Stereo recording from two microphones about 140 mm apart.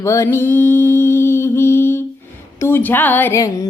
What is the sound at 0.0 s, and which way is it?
Mantra, 20° left (ahead or behind).